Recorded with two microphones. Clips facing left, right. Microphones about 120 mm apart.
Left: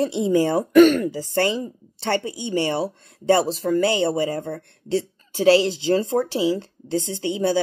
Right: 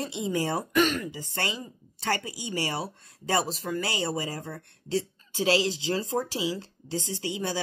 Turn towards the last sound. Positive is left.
turn(degrees=35)  # may be behind; listen again after turning